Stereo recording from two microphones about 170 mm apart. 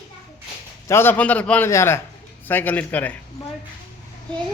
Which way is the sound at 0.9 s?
15° left (ahead or behind).